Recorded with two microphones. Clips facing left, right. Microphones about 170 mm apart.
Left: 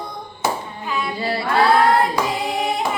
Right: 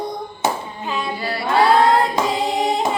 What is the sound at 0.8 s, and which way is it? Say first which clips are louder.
Child singing: even; 25° right (ahead or behind).